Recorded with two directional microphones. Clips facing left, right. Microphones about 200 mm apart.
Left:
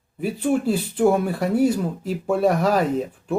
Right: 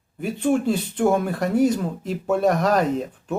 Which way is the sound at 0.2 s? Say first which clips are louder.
Even; 5° left (ahead or behind).